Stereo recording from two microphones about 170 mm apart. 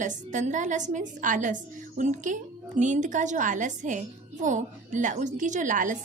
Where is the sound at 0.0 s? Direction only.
45° right (ahead or behind).